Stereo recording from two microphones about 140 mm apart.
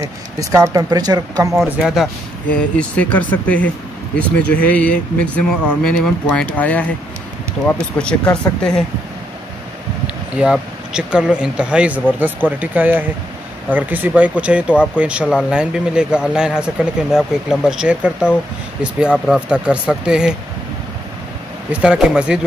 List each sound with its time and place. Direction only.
0.0 s speech: 25° right (ahead or behind)
1.6 s speech: centre (ahead or behind)
2.7 s speech: 10° left (ahead or behind)
8.0 s speech: 5° left (ahead or behind)
10.0 s speech: 5° right (ahead or behind)
21.7 s speech: 5° right (ahead or behind)